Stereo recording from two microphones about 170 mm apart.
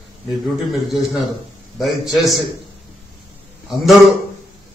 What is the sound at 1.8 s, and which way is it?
Speech, centre (ahead or behind).